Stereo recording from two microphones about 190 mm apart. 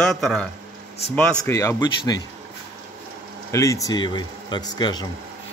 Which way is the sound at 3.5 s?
15° left (ahead or behind).